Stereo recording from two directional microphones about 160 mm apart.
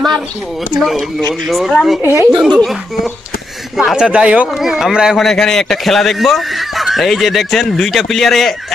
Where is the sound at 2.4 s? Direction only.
Centre (ahead or behind).